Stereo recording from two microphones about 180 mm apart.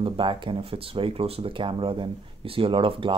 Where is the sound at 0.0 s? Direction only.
25° right (ahead or behind).